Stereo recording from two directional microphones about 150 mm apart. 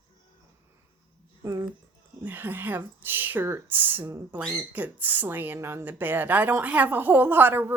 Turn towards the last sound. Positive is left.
turn(degrees=-15)  # may be behind; listen again after turning